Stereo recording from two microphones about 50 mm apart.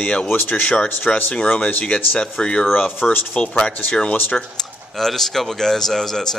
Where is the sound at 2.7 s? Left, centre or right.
Left.